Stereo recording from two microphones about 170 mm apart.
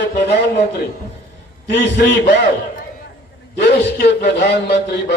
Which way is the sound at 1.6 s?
85° left.